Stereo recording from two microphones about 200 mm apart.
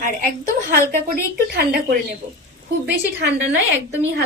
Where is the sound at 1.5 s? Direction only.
50° right (ahead or behind).